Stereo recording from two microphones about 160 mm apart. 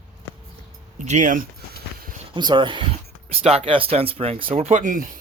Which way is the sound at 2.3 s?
30° right (ahead or behind).